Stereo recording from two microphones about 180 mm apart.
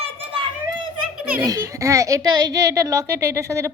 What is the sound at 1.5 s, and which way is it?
A child's voice, 15° right (ahead or behind).